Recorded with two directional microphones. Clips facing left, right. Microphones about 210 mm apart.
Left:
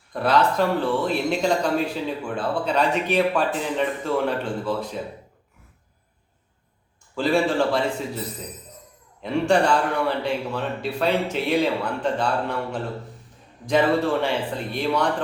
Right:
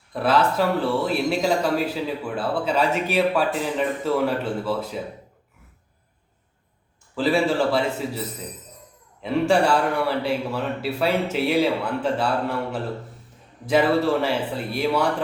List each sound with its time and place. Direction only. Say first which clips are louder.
0.1 s speech: even; 5° right (ahead or behind)
7.2 s speech: even; 5° right (ahead or behind)
9.2 s speech: even; 5° right (ahead or behind)